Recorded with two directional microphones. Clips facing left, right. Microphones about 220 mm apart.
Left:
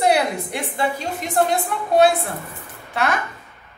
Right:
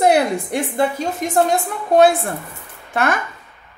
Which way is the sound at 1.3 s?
45° right (ahead or behind).